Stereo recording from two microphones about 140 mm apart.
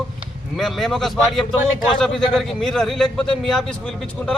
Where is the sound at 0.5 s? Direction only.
Centre (ahead or behind).